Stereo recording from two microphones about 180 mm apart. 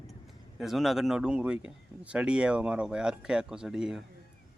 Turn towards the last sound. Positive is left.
turn(degrees=-5)  # may be behind; listen again after turning